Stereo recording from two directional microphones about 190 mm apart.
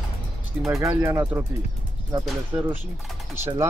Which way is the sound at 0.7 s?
15° right (ahead or behind).